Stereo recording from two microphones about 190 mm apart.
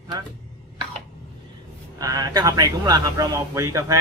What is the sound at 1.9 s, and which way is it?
Speech, 20° right (ahead or behind).